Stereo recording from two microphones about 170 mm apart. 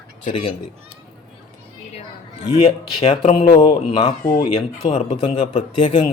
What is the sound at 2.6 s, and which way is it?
Speech, 30° left (ahead or behind).